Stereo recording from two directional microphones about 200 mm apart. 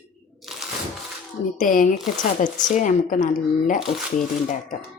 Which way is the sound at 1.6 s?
40° left (ahead or behind).